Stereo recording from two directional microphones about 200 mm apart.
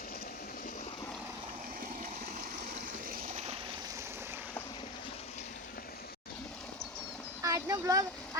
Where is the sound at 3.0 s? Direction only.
40° right (ahead or behind).